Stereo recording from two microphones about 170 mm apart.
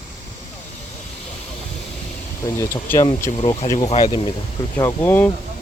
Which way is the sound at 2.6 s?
15° left (ahead or behind).